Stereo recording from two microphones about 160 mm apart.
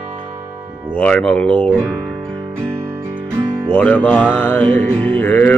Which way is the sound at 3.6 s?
10° left (ahead or behind).